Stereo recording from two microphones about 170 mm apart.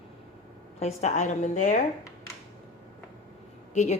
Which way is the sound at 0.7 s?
40° left (ahead or behind).